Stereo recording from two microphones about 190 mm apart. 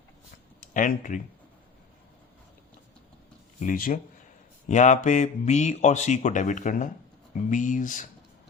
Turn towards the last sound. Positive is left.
turn(degrees=45)  # may be behind; listen again after turning